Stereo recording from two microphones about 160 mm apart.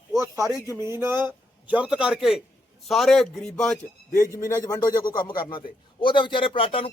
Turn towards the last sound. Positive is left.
turn(degrees=35)  # may be behind; listen again after turning